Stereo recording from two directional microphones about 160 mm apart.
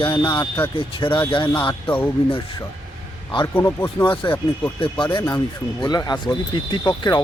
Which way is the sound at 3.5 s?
15° left (ahead or behind).